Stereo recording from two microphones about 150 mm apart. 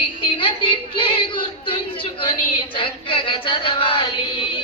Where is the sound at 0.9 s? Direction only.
35° left (ahead or behind).